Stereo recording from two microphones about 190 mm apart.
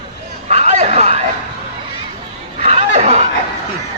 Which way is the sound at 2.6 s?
35° right (ahead or behind).